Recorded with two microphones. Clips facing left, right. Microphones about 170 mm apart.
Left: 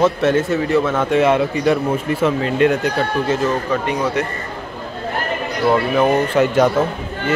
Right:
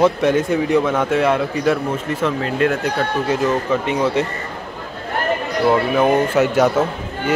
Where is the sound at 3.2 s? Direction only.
20° right (ahead or behind).